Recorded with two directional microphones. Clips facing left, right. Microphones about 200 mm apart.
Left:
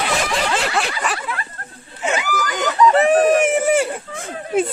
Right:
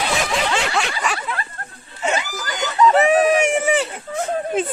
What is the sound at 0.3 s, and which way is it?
Snicker, centre (ahead or behind).